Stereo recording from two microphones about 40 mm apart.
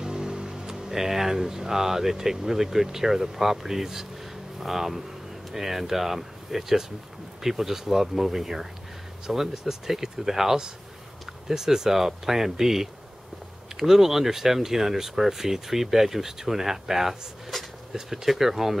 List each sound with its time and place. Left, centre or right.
0.0 s speech: centre